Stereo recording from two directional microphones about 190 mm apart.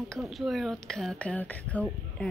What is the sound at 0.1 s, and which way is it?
Speech, centre (ahead or behind).